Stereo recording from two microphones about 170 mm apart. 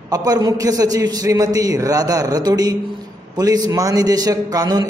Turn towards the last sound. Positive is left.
turn(degrees=-20)  # may be behind; listen again after turning